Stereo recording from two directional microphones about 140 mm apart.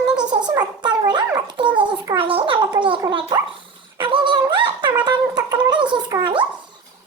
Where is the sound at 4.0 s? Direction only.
40° right (ahead or behind).